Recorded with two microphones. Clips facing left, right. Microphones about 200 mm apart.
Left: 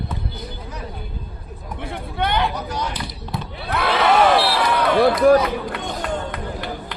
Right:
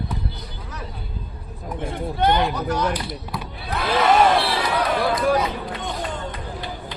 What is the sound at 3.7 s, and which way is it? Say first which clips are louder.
Crowd: left 3 dB; 60° left (ahead or behind).